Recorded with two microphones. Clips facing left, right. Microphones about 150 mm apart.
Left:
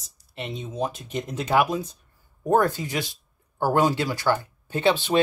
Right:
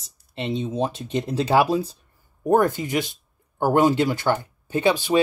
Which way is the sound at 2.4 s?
20° right (ahead or behind).